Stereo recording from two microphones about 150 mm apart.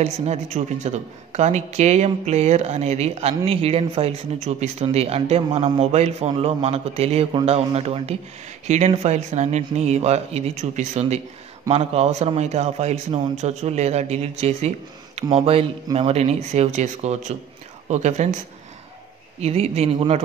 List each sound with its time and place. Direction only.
0.0 s a man's voice: 45° right (ahead or behind)
19.4 s a man's voice: 45° right (ahead or behind)